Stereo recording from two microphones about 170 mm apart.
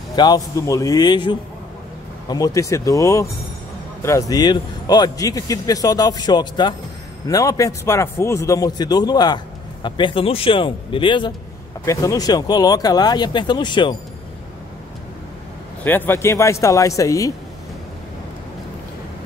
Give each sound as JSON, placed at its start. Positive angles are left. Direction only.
{"t": 0.1, "sound": "speech", "side_deg": 25}
{"t": 15.8, "sound": "speech", "side_deg": 10}